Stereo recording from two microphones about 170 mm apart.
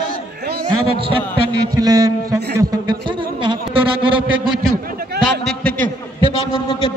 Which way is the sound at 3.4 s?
30° right (ahead or behind).